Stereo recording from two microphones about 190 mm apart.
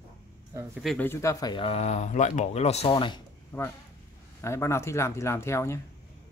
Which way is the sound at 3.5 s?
10° left (ahead or behind).